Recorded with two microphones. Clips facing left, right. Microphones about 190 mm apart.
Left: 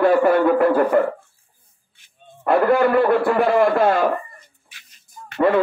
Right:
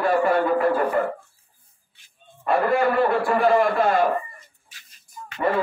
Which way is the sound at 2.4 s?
70° left (ahead or behind).